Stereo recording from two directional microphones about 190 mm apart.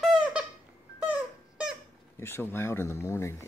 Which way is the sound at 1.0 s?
5° right (ahead or behind).